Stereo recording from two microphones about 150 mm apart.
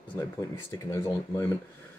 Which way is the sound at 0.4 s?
20° left (ahead or behind).